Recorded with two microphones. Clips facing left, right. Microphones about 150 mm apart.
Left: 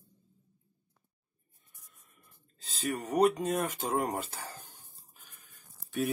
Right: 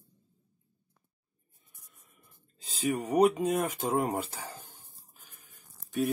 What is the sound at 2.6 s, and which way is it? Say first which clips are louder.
Speech: right 4 dB; 10° right (ahead or behind).